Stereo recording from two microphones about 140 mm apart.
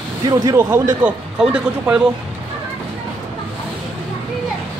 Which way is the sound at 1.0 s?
10° right (ahead or behind).